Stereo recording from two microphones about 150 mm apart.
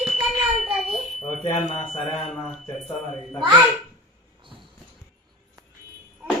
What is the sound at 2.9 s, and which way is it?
Speech, centre (ahead or behind).